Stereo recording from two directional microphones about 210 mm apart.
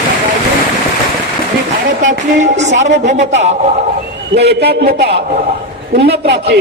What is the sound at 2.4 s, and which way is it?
Speech, 35° right (ahead or behind).